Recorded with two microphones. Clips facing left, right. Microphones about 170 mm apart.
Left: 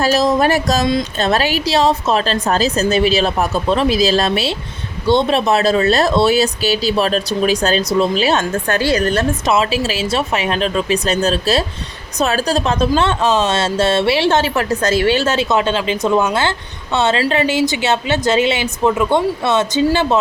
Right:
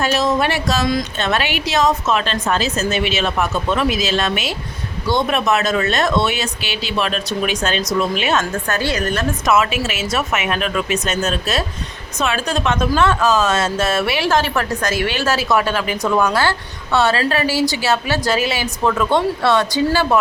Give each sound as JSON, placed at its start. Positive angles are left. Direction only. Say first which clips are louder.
{"t": 0.0, "sound": "speech", "louder": "left 3 dB", "side_deg": 35}